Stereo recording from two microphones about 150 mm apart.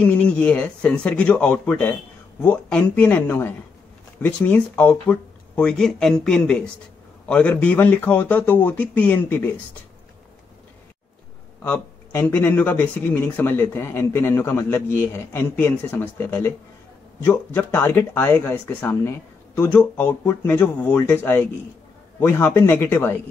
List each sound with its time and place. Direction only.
0.0 s speech: 10° left (ahead or behind)
11.6 s speech: 15° left (ahead or behind)